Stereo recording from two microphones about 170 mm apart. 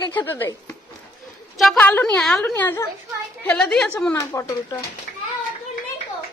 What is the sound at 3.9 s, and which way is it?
Speech, 15° left (ahead or behind).